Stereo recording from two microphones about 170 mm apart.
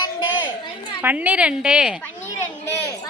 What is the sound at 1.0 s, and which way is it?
A woman's voice, 10° right (ahead or behind).